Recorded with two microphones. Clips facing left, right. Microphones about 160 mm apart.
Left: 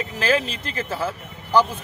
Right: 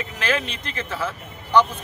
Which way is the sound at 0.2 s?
35° left (ahead or behind).